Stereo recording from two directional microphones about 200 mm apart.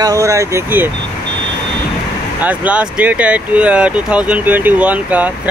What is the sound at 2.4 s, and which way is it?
Speech, 10° right (ahead or behind).